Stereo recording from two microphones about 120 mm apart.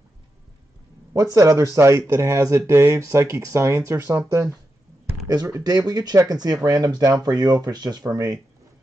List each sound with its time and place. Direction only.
1.1 s speech: 25° right (ahead or behind)